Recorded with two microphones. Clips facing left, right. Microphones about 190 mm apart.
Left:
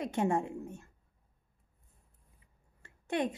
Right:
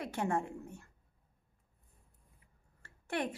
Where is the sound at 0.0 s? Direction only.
20° left (ahead or behind).